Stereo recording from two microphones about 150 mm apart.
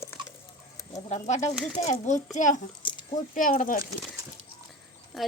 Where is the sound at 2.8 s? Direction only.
35° left (ahead or behind).